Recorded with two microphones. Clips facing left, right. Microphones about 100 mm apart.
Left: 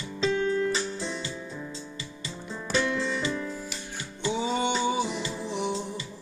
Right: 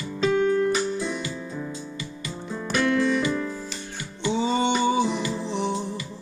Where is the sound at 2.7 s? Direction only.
25° left (ahead or behind).